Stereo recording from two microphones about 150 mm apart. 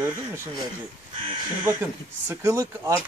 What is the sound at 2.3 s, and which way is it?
Speech, 20° right (ahead or behind).